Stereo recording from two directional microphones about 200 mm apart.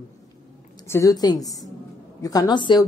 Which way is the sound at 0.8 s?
15° left (ahead or behind).